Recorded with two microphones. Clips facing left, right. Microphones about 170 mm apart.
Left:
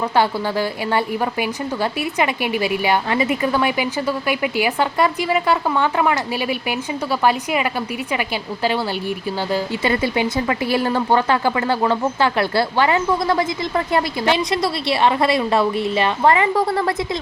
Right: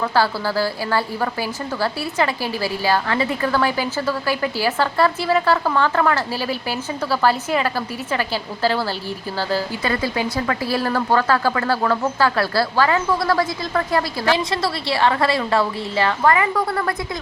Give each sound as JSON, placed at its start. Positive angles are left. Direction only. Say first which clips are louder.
{"t": 0.0, "sound": "a woman's voice", "louder": "left 1 dB", "side_deg": 20}